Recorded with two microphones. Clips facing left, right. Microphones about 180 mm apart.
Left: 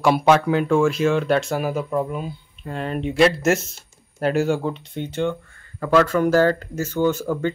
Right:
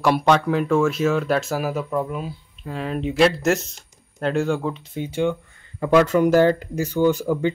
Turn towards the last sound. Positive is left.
turn(degrees=-15)  # may be behind; listen again after turning